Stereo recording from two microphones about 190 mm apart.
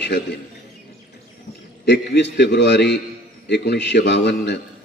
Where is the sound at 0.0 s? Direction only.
65° left (ahead or behind).